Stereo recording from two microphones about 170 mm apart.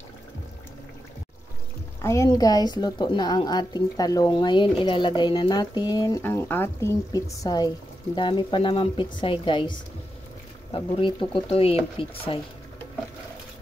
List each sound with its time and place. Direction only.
2.0 s a woman's voice: 15° left (ahead or behind); by 12.4 s 35° left (ahead or behind)